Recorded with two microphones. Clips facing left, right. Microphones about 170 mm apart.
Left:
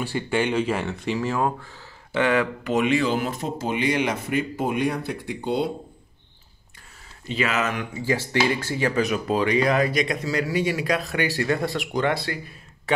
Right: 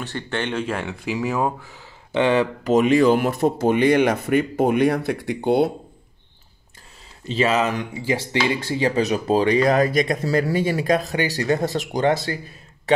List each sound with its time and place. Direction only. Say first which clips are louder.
0.0 s speech: left 3 dB; 10° left (ahead or behind); by 1.8 s 10° right (ahead or behind)
2.1 s speech: right 3 dB; 25° right (ahead or behind)
2.6 s speech: right 6 dB; 40° right (ahead or behind); by 5.7 s 65° right (ahead or behind)
7.2 s speech: right 5 dB; 30° right (ahead or behind)
8.0 s speech: even; 20° right (ahead or behind); by 12.4 s 40° right (ahead or behind)